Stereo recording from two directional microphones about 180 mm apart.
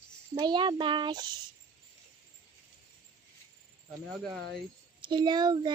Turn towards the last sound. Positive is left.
turn(degrees=-25)  # may be behind; listen again after turning